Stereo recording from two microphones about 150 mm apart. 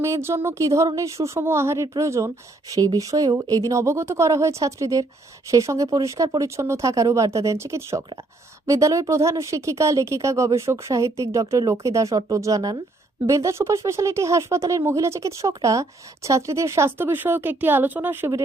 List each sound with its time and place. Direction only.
0.0 s speech: 15° right (ahead or behind)